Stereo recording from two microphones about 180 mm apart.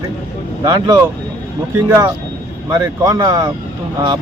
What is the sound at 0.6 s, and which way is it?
Speech, 20° right (ahead or behind).